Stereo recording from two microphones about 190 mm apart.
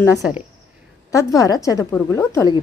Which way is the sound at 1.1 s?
15° left (ahead or behind).